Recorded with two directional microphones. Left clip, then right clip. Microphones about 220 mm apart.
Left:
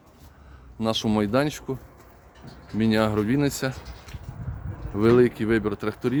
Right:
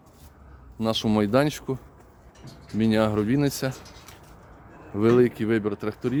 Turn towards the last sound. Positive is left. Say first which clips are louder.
# left 1 dB
turn(degrees=-5)  # may be behind; listen again after turning